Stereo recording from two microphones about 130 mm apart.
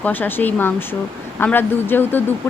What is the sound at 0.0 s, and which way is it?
A woman's voice, 15° left (ahead or behind).